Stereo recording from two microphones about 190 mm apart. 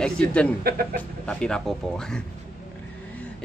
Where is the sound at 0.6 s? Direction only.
55° right (ahead or behind).